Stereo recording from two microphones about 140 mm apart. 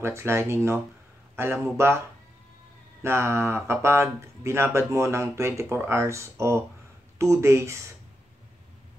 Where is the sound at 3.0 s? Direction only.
20° right (ahead or behind).